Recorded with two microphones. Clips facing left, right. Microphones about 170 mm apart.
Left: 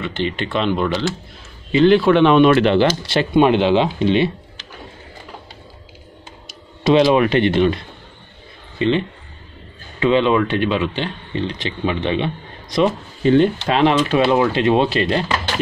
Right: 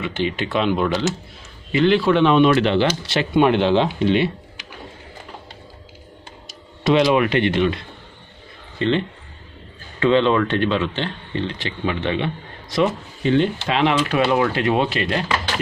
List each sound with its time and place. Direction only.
0.0 s speech: 10° right (ahead or behind)
1.9 s speech: 60° left (ahead or behind)
3.3 s speech: 20° left (ahead or behind)
6.8 s speech: 25° left (ahead or behind)
8.7 s speech: 15° left (ahead or behind)
13.2 s speech: 45° left (ahead or behind)
14.0 s speech: 25° left (ahead or behind)